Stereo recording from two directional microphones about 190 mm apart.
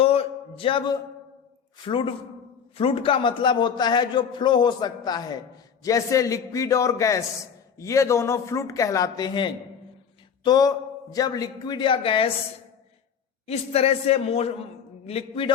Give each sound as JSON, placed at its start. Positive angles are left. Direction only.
{"t": 0.0, "sound": "a sound", "side_deg": 30}
{"t": 1.8, "sound": "a man's voice", "side_deg": 25}
{"t": 13.5, "sound": "a man's voice", "side_deg": 30}